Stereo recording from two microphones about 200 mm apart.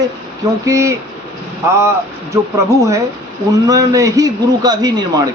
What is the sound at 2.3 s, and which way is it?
Speech, 15° right (ahead or behind).